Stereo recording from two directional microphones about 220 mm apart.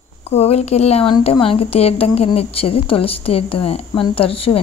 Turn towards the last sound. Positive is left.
turn(degrees=25)  # may be behind; listen again after turning